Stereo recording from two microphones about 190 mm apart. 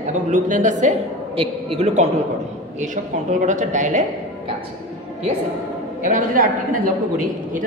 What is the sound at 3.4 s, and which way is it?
Speech, 40° right (ahead or behind).